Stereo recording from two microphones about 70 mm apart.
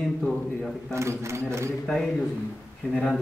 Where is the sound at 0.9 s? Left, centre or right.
Right.